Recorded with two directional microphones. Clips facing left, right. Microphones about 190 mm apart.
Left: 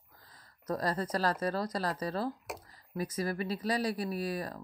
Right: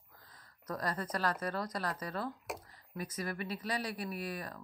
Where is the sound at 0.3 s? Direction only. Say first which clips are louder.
Left 6 dB; 35° left (ahead or behind).